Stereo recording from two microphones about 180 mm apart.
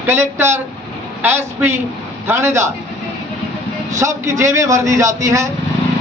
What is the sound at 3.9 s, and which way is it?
A man's voice, 15° right (ahead or behind).